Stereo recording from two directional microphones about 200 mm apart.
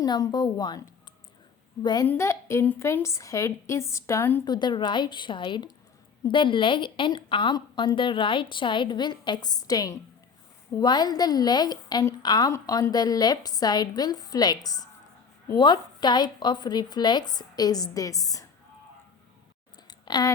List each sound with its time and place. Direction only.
0.0 s a woman's voice: 20° left (ahead or behind)
4.4 s a woman's voice: 20° left (ahead or behind)
19.9 s a sound: 20° left (ahead or behind)